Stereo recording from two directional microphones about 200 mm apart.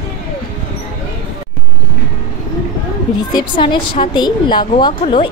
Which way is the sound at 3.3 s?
25° left (ahead or behind).